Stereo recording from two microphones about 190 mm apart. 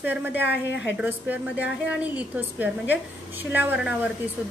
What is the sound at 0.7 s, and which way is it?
Speech, 70° left (ahead or behind).